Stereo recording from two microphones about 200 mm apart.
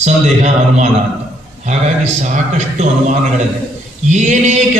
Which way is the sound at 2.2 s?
35° right (ahead or behind).